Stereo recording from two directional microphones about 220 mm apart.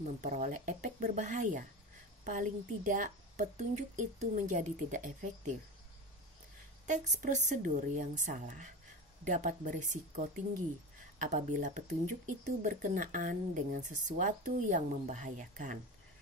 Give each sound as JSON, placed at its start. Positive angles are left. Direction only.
{"t": 0.2, "sound": "a woman's voice", "side_deg": -35}
{"t": 6.9, "sound": "a woman's voice", "side_deg": -35}